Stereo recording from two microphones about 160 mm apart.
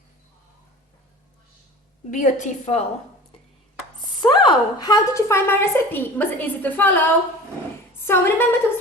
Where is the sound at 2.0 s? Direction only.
50° left (ahead or behind).